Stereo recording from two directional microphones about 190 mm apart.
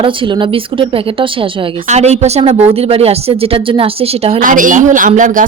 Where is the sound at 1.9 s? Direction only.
35° right (ahead or behind).